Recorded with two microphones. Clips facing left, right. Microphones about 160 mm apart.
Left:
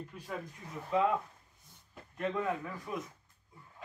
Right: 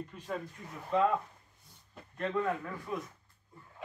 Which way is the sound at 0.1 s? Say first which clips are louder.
Right 4 dB; 10° left (ahead or behind).